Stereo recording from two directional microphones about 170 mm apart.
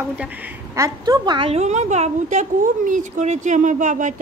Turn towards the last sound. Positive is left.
turn(degrees=-45)  # may be behind; listen again after turning